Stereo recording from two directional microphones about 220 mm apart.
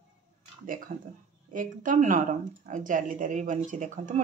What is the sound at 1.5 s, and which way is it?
Speech, 35° right (ahead or behind).